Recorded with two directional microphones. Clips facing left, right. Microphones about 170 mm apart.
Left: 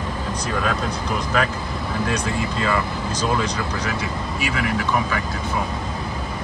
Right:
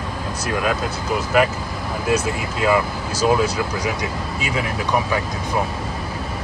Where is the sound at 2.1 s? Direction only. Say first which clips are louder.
Right 3 dB; 5° right (ahead or behind).